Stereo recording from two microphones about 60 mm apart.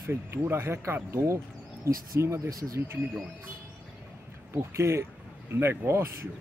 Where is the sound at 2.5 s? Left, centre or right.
Right.